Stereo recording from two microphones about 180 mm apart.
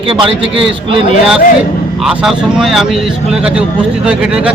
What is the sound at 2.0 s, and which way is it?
A man's voice, 5° right (ahead or behind).